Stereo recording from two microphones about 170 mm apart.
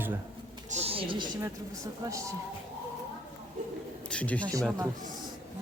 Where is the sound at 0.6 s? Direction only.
40° right (ahead or behind).